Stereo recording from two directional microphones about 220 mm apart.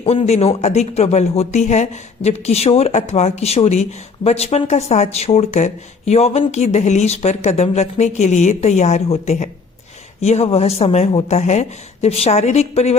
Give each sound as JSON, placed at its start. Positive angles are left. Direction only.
{"t": 0.0, "sound": "speech", "side_deg": 25}